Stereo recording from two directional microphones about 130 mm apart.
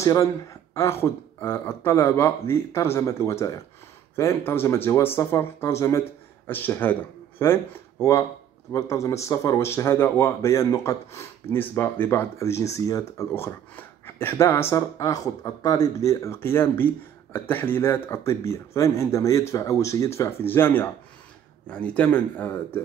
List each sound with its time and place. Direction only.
0.0 s speech: 25° left (ahead or behind)